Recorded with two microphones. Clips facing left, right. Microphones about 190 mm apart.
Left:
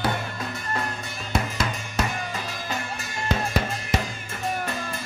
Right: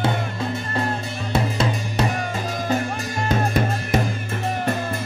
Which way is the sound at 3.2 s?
50° right (ahead or behind).